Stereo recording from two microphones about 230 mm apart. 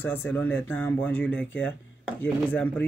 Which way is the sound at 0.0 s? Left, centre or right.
Centre.